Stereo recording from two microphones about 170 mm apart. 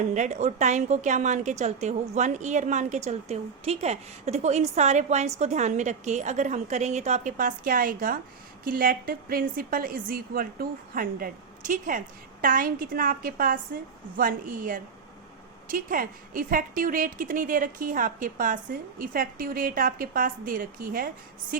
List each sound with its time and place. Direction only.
0.1 s a woman's voice: 45° right (ahead or behind)